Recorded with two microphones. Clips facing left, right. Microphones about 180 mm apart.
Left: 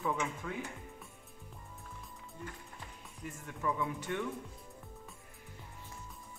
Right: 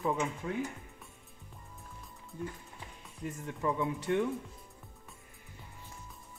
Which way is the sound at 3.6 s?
20° right (ahead or behind).